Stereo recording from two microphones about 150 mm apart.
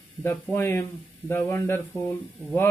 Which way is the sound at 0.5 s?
15° left (ahead or behind).